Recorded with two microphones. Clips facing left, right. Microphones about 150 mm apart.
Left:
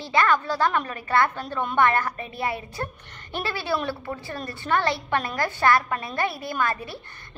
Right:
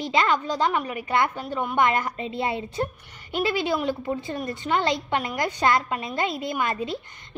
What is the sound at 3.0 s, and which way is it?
A woman's voice, 10° right (ahead or behind).